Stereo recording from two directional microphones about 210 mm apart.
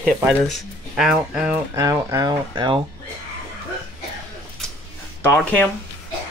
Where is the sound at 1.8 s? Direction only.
15° right (ahead or behind).